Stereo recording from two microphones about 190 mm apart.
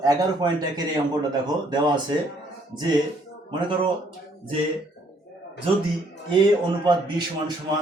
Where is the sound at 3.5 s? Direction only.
25° right (ahead or behind).